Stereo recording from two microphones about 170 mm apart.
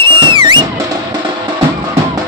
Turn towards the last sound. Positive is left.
turn(degrees=-30)  # may be behind; listen again after turning